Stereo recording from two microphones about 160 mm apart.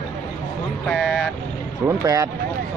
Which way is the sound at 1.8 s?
20° right (ahead or behind).